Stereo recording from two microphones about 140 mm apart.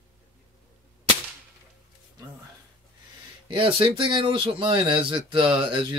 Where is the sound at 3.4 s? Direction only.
35° right (ahead or behind).